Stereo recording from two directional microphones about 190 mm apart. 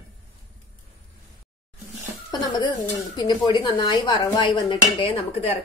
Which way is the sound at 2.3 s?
20° left (ahead or behind).